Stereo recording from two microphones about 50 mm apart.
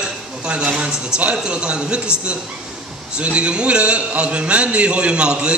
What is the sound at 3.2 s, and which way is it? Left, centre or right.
A man's voice, right.